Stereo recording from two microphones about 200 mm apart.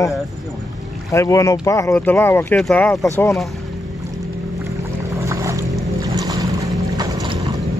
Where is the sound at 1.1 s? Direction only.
15° left (ahead or behind).